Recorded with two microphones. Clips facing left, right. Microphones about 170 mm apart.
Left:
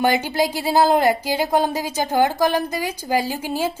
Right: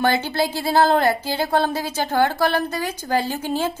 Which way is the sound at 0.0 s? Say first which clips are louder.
Left 1 dB; 15° left (ahead or behind).